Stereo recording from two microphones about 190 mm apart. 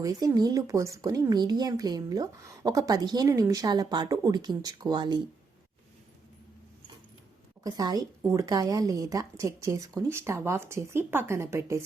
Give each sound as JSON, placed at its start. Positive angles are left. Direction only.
{"t": 0.0, "sound": "speech", "side_deg": -20}
{"t": 7.6, "sound": "a woman's voice", "side_deg": -20}